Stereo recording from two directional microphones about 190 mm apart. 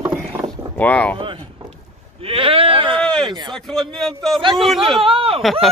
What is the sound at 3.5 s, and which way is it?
A man's voice, 5° left (ahead or behind).